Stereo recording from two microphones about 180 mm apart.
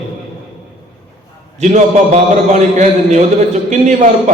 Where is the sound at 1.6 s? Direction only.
40° right (ahead or behind).